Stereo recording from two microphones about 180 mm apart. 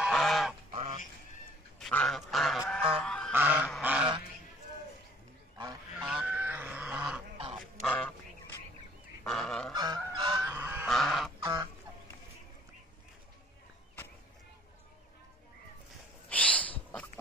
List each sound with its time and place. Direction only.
0.0 s goose: centre (ahead or behind)
0.7 s duck: 35° right (ahead or behind)
1.8 s goose: 5° left (ahead or behind)
3.3 s goose: 10° right (ahead or behind)
3.8 s duck: 10° right (ahead or behind)
5.9 s goose: 5° right (ahead or behind)
7.8 s duck: 5° left (ahead or behind)
9.2 s goose: centre (ahead or behind)
9.8 s goose: 20° right (ahead or behind)
10.9 s goose: centre (ahead or behind)
16.3 s owl: 5° left (ahead or behind)